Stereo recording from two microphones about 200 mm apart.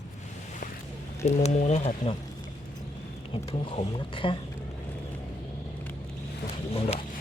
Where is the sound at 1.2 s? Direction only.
35° left (ahead or behind).